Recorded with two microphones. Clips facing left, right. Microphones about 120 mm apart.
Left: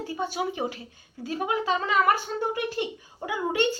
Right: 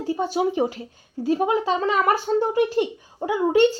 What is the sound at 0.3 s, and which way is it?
Speech, 35° right (ahead or behind).